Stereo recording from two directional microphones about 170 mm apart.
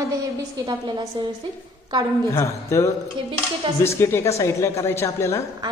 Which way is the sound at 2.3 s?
15° left (ahead or behind).